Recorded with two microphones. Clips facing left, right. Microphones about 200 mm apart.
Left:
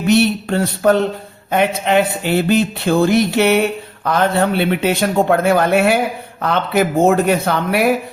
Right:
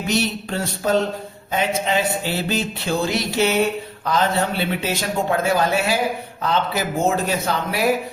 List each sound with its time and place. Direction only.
0.1 s a man's voice: 60° left (ahead or behind)